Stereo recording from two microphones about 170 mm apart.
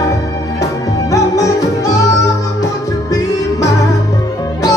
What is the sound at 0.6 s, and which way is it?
Music, 20° left (ahead or behind).